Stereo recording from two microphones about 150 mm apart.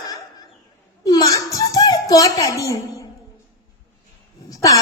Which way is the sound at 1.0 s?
25° left (ahead or behind).